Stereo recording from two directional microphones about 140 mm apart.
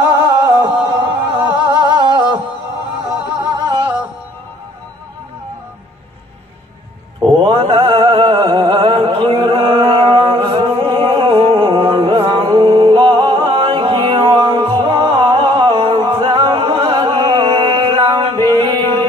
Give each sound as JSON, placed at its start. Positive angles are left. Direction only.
{"t": 0.0, "sound": "music", "side_deg": -30}
{"t": 3.3, "sound": "music", "side_deg": -30}
{"t": 7.3, "sound": "music", "side_deg": -35}